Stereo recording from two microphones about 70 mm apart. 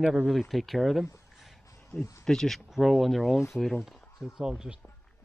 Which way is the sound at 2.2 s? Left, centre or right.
Centre.